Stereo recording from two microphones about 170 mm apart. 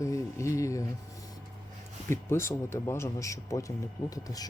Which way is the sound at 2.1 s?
15° left (ahead or behind).